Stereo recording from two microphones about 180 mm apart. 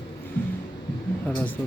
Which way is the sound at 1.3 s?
10° left (ahead or behind).